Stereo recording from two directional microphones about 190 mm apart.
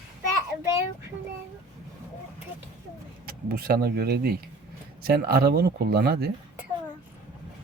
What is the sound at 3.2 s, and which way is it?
Speech, 50° right (ahead or behind).